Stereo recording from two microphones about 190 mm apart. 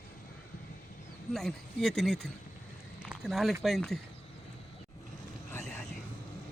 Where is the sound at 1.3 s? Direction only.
Centre (ahead or behind).